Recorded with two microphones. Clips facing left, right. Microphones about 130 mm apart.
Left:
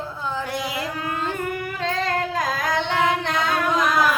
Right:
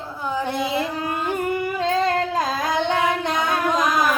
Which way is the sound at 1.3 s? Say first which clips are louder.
Right 4 dB; 20° right (ahead or behind).